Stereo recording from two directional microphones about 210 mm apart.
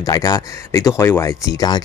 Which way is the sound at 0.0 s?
15° left (ahead or behind).